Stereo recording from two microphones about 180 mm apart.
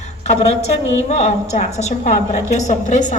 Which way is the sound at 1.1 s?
40° left (ahead or behind).